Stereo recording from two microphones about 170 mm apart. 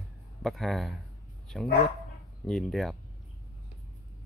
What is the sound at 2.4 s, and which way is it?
Speech, centre (ahead or behind).